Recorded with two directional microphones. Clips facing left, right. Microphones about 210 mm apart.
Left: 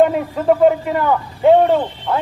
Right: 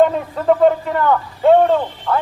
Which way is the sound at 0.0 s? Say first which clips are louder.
Left 1 dB; 10° left (ahead or behind).